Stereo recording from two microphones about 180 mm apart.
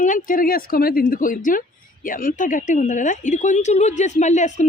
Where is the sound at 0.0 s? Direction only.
45° left (ahead or behind).